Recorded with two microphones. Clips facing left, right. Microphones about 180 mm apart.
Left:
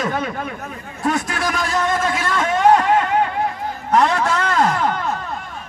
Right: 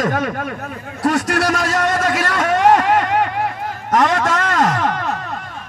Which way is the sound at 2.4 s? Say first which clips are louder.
Right 1 dB; 75° right (ahead or behind).